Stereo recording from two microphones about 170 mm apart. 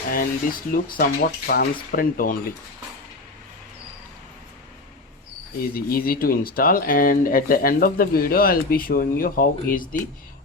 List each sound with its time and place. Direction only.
0.1 s speech: 55° left (ahead or behind)
5.7 s speech: 60° left (ahead or behind)